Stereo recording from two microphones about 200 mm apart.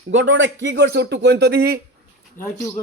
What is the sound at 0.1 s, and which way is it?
Speech, 70° right (ahead or behind).